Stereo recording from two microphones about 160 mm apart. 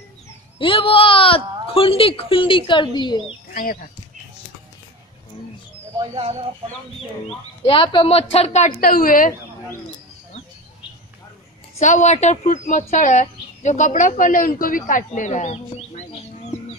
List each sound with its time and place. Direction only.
0.6 s speech: 35° left (ahead or behind)
5.9 s speech: 35° right (ahead or behind)
7.6 s speech: 35° left (ahead or behind); by 9.3 s 60° left (ahead or behind)
11.8 s speech: 50° left (ahead or behind)